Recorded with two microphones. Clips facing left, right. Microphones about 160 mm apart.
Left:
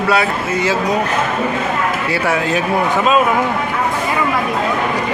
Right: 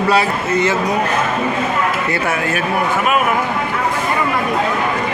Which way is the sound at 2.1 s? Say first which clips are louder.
Left 2 dB; 15° left (ahead or behind).